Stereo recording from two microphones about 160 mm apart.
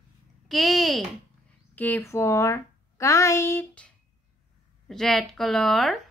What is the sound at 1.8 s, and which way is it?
Speech, 15° left (ahead or behind).